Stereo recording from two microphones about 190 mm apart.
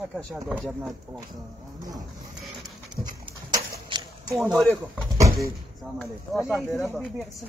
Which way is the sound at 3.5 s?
20° right (ahead or behind).